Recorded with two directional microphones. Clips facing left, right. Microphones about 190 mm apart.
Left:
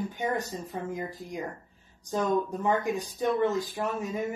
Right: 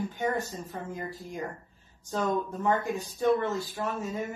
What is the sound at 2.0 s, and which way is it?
Speech, 15° left (ahead or behind).